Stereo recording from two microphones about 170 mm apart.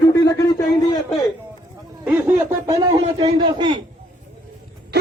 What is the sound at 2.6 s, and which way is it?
A man's voice, 25° right (ahead or behind).